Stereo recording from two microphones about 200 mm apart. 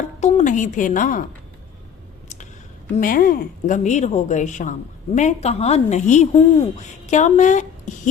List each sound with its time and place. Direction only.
0.2 s a woman's voice: 35° left (ahead or behind)
2.9 s a woman's voice: 45° left (ahead or behind)